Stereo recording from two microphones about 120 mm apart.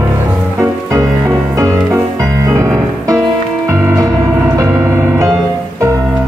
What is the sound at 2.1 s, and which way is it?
Music, 25° right (ahead or behind).